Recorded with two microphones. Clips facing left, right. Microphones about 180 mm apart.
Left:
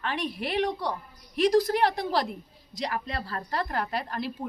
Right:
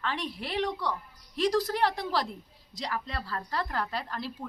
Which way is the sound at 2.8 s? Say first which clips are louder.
Left 3 dB; 55° left (ahead or behind).